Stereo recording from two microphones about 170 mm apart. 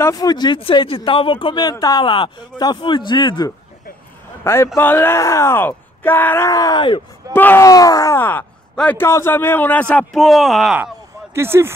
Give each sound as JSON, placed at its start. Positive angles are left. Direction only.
{"t": 0.0, "sound": "speech", "side_deg": 20}
{"t": 4.7, "sound": "speech", "side_deg": 10}
{"t": 7.3, "sound": "speech", "side_deg": 10}
{"t": 11.3, "sound": "speech", "side_deg": -15}